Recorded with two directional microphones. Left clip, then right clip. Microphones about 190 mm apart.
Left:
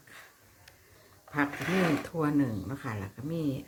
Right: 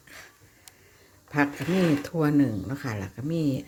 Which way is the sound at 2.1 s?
30° right (ahead or behind).